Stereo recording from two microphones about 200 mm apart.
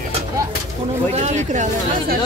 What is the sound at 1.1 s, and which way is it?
Speech, 35° right (ahead or behind).